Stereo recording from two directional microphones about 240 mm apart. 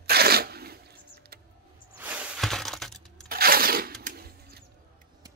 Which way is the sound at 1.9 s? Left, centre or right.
Centre.